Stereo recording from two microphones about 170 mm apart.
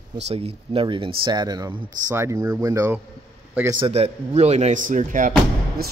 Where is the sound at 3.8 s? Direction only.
35° right (ahead or behind).